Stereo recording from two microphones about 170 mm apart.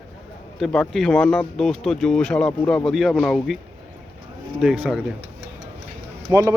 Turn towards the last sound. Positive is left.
turn(degrees=-15)  # may be behind; listen again after turning